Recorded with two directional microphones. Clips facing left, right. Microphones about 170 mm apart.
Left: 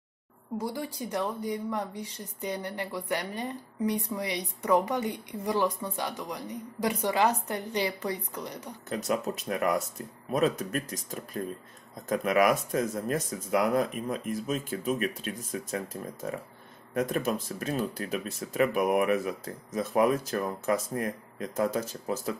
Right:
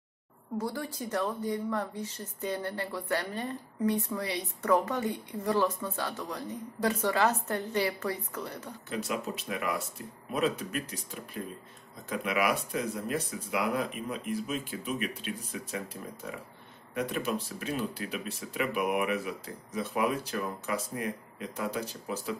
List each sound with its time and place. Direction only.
0.6 s a woman's voice: 10° left (ahead or behind)
8.8 s speech: 45° left (ahead or behind)